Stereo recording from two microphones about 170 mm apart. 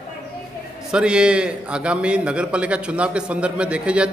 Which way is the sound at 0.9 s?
5° right (ahead or behind).